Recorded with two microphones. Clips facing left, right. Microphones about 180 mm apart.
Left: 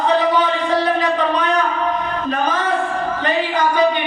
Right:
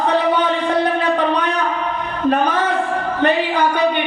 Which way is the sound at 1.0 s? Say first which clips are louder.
Right 1 dB; 60° right (ahead or behind).